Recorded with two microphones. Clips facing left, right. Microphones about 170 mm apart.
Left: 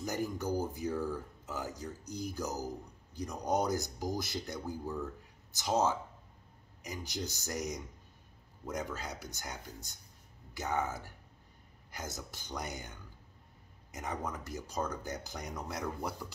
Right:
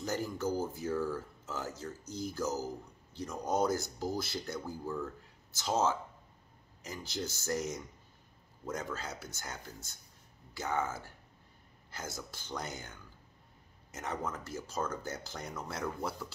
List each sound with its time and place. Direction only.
0.0 s speech: 15° left (ahead or behind)
13.9 s speech: 15° left (ahead or behind)